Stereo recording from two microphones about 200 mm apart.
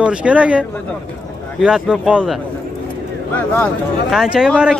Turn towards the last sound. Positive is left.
turn(degrees=-5)  # may be behind; listen again after turning